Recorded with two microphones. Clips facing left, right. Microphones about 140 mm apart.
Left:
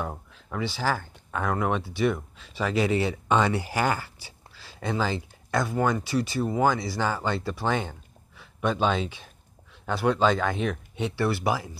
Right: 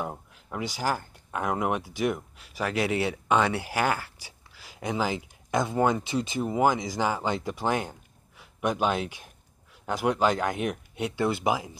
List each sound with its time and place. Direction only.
0.3 s speech: 15° right (ahead or behind)